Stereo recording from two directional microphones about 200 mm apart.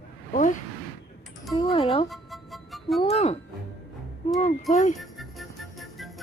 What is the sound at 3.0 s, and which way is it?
Speech, 30° left (ahead or behind).